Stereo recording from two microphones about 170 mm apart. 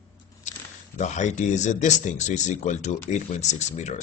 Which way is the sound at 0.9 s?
45° left (ahead or behind).